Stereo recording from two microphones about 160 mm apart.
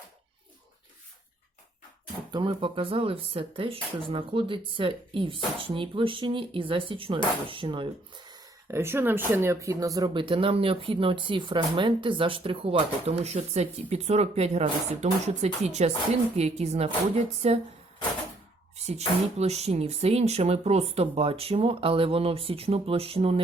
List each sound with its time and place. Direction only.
2.3 s speech: 30° right (ahead or behind)
8.6 s a woman's voice: 15° right (ahead or behind); by 17.6 s 40° right (ahead or behind)
18.8 s speech: 40° right (ahead or behind)